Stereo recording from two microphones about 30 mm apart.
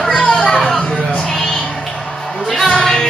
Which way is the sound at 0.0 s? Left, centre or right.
Left.